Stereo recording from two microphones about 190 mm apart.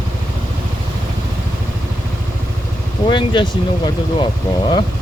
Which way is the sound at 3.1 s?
25° left (ahead or behind).